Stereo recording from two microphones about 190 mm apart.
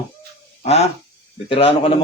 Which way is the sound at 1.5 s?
30° left (ahead or behind).